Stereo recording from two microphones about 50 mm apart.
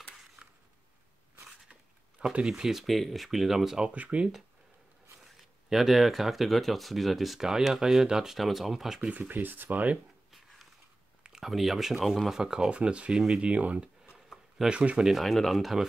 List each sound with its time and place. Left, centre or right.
0.4 s a sound: centre
1.7 s a sound: centre
2.4 s speech: centre
3.8 s speech: right
5.2 s speech: centre
8.4 s speech: centre
9.1 s speech: right
11.4 s speech: centre
12.4 s speech: centre
14.1 s a sound: centre
14.7 s speech: right
15.0 s speech: centre